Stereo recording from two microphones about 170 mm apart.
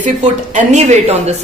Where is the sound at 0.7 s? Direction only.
45° right (ahead or behind).